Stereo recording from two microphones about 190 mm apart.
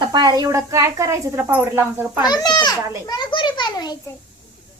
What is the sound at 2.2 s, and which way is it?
Speech, 20° left (ahead or behind).